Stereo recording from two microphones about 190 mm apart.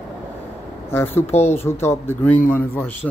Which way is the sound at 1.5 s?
15° left (ahead or behind).